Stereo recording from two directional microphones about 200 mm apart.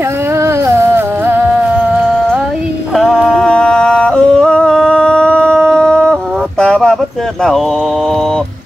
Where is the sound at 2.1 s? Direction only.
5° right (ahead or behind).